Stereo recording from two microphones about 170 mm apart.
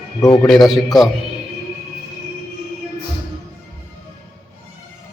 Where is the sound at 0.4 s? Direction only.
Centre (ahead or behind).